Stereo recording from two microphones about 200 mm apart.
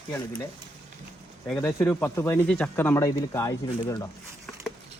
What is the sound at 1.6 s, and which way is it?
Speech, 10° left (ahead or behind).